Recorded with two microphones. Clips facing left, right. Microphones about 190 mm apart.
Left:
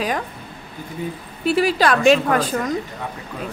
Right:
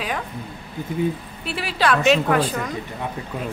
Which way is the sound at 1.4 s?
40° left (ahead or behind).